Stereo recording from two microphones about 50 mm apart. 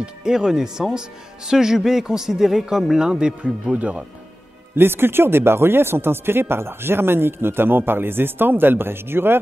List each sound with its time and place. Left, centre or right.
0.0 s speech: centre
3.7 s speech: right
4.7 s speech: right